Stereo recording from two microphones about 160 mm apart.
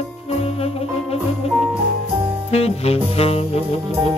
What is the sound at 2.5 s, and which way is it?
Music, 40° left (ahead or behind).